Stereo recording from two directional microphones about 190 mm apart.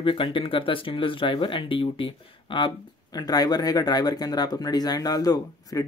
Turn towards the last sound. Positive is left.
turn(degrees=20)  # may be behind; listen again after turning